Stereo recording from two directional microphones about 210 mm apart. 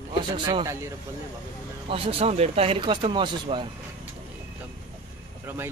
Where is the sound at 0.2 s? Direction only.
20° right (ahead or behind).